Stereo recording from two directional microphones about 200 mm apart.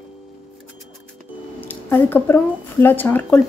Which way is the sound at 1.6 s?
10° left (ahead or behind).